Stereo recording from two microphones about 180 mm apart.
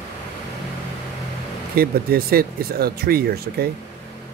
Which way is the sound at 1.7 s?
55° right (ahead or behind).